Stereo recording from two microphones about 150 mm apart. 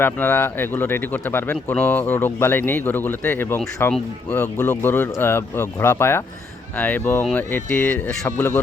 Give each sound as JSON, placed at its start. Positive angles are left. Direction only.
{"t": 0.0, "sound": "speech", "side_deg": 15}